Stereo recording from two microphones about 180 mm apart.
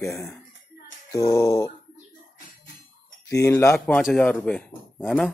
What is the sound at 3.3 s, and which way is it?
Speech, 15° left (ahead or behind).